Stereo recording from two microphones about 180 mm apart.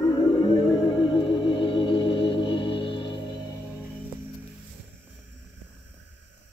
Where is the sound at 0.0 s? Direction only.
20° left (ahead or behind).